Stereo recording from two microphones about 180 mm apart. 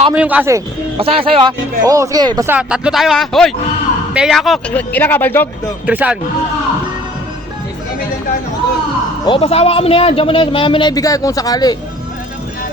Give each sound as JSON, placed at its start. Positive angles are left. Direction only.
{"t": 0.1, "sound": "a man's voice", "side_deg": -10}
{"t": 0.9, "sound": "a man's voice", "side_deg": -30}
{"t": 2.5, "sound": "a man's voice", "side_deg": -5}
{"t": 5.8, "sound": "a man's voice", "side_deg": -5}
{"t": 9.2, "sound": "a man's voice", "side_deg": 30}